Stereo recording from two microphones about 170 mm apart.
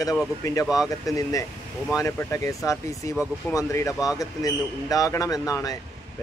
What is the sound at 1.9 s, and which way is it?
A man's voice, 15° left (ahead or behind).